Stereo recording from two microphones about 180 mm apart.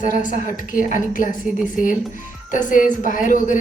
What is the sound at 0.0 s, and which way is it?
A woman's voice, 45° left (ahead or behind).